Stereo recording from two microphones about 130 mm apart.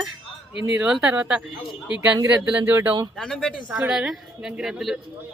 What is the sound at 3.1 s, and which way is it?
Speech, 5° left (ahead or behind).